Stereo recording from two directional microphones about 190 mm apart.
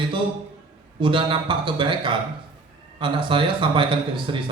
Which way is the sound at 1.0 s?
25° right (ahead or behind).